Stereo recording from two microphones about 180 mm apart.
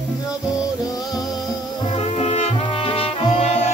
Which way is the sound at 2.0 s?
35° left (ahead or behind).